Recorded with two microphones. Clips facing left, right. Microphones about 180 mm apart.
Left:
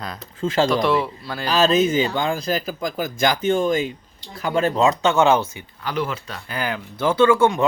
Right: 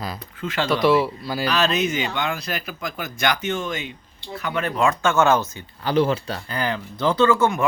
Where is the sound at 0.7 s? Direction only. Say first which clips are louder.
Right 1 dB; 5° right (ahead or behind).